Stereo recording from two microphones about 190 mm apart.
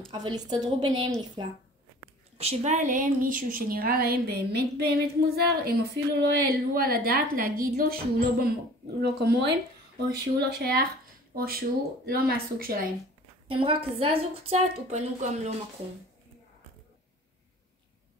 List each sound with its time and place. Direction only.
0.1 s a woman's voice: 25° right (ahead or behind)
2.3 s a woman's voice: 35° right (ahead or behind); by 9.6 s 60° right (ahead or behind)
10.6 s a woman's voice: 55° right (ahead or behind)
13.5 s a woman's voice: 30° right (ahead or behind)